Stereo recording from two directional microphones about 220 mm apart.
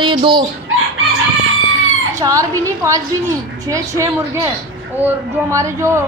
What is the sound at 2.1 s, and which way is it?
Speech, 15° right (ahead or behind).